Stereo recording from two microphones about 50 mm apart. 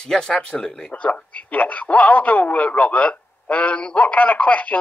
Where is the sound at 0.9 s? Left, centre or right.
Left.